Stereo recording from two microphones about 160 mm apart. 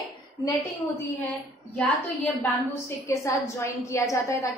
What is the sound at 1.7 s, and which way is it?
Speech, 10° left (ahead or behind).